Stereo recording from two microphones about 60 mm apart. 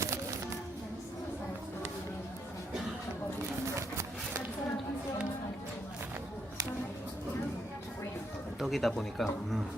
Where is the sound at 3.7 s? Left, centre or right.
Right.